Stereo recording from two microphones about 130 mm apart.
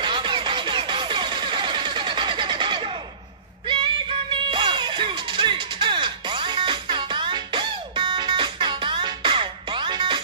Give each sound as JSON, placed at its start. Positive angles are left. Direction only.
{"t": 0.0, "sound": "music", "side_deg": -35}